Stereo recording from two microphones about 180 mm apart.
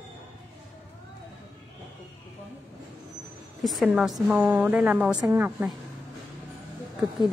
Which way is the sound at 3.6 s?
Centre (ahead or behind).